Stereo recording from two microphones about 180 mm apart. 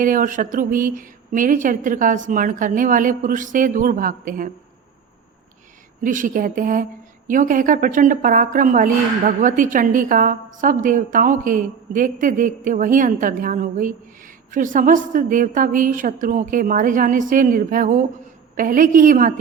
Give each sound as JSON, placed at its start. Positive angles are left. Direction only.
{"t": 0.0, "sound": "a woman's voice", "side_deg": -50}
{"t": 6.0, "sound": "a woman's voice", "side_deg": -45}